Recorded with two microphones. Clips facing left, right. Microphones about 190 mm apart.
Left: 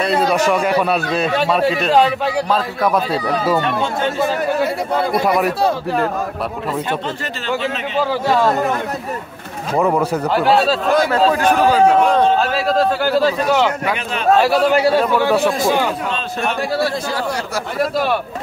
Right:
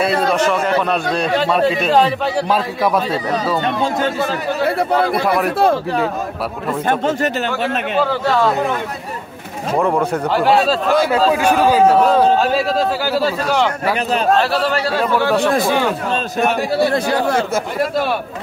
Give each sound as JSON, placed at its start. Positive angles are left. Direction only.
{"t": 0.0, "sound": "a man's voice", "side_deg": 0}
{"t": 0.4, "sound": "a man's voice", "side_deg": 10}
{"t": 5.1, "sound": "a man's voice", "side_deg": 0}
{"t": 6.9, "sound": "a man's voice", "side_deg": -50}
{"t": 8.0, "sound": "a man's voice", "side_deg": 10}
{"t": 9.8, "sound": "a man's voice", "side_deg": 5}
{"t": 14.3, "sound": "a man's voice", "side_deg": 10}